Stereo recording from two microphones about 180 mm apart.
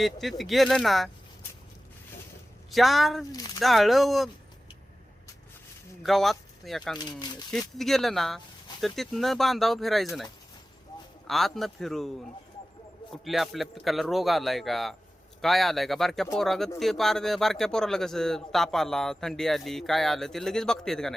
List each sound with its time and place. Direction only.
0.0 s speech: centre (ahead or behind)
2.6 s speech: centre (ahead or behind)
3.3 s speech: 20° left (ahead or behind)
3.6 s speech: centre (ahead or behind)
6.0 s speech: centre (ahead or behind)
7.0 s speech: 25° left (ahead or behind)
7.8 s speech: centre (ahead or behind)
11.3 s speech: centre (ahead or behind)